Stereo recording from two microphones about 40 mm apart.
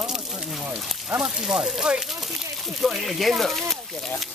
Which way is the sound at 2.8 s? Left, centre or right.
Centre.